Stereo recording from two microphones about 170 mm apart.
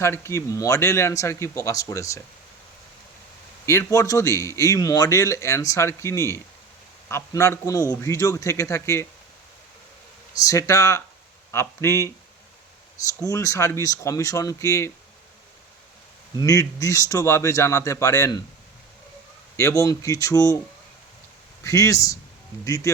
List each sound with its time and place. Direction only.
0.0 s speech: 15° left (ahead or behind)
3.7 s speech: 15° left (ahead or behind)
10.3 s a man's voice: 20° left (ahead or behind)
13.2 s a man's voice: 20° left (ahead or behind)
16.4 s a man's voice: 20° left (ahead or behind)
19.5 s a man's voice: 20° left (ahead or behind)
21.6 s a man's voice: 20° left (ahead or behind)